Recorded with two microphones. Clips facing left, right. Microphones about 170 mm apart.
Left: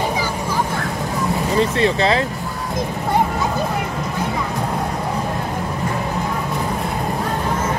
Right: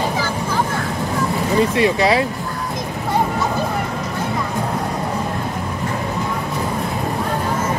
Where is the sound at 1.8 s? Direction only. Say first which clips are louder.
Right 1 dB; 15° right (ahead or behind).